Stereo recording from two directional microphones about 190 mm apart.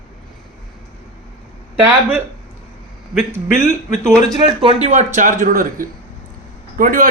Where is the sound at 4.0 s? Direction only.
5° left (ahead or behind).